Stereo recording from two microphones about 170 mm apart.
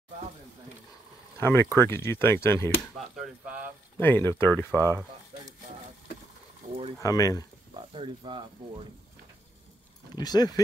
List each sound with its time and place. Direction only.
1.4 s speech: 15° left (ahead or behind)
2.8 s speech: 5° right (ahead or behind)
4.0 s speech: 10° left (ahead or behind)
7.0 s speech: 20° left (ahead or behind)
7.7 s speech: 30° right (ahead or behind)
10.1 s speech: 25° left (ahead or behind)